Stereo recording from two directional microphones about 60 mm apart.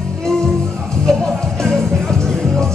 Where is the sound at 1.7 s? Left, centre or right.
Centre.